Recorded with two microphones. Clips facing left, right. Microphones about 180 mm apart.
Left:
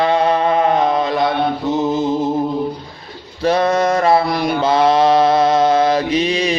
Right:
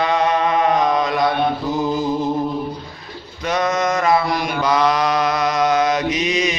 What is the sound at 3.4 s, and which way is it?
Mantra, 30° left (ahead or behind).